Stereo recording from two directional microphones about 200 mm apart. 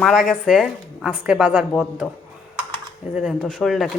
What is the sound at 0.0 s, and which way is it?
A woman's voice, centre (ahead or behind).